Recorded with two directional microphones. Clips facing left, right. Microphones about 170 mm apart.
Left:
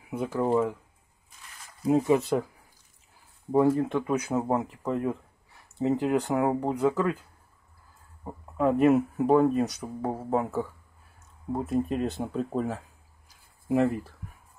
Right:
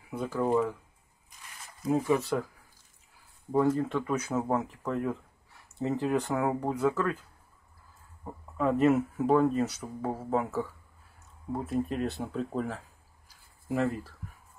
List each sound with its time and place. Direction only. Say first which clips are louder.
0.1 s speech: left 2 dB; 15° left (ahead or behind)
1.9 s speech: left 4 dB; 20° left (ahead or behind)
3.5 s speech: left 3 dB; 10° left (ahead or behind)
8.2 s speech: left 4 dB; 10° left (ahead or behind)
11.9 s speech: left 3 dB; 15° left (ahead or behind)